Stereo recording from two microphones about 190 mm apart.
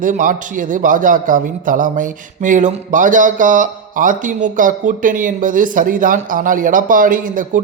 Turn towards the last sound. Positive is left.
turn(degrees=-45)  # may be behind; listen again after turning